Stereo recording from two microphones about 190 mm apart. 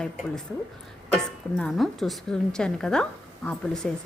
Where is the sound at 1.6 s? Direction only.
Centre (ahead or behind).